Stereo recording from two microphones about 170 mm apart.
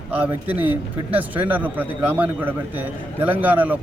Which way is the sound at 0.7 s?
10° right (ahead or behind).